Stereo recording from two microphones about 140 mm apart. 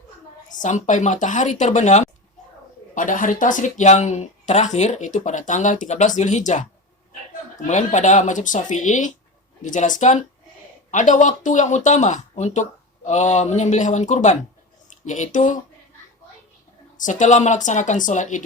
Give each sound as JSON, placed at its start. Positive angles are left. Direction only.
{"t": 0.6, "sound": "speech", "side_deg": 60}
{"t": 2.9, "sound": "speech", "side_deg": 70}
{"t": 7.7, "sound": "speech", "side_deg": 60}
{"t": 17.0, "sound": "speech", "side_deg": 60}